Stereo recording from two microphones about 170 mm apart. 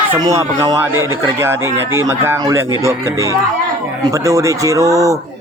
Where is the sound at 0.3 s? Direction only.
20° right (ahead or behind).